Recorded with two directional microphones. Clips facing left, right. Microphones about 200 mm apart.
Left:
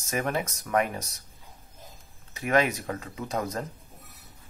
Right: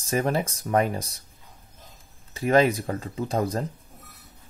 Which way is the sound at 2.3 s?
30° right (ahead or behind).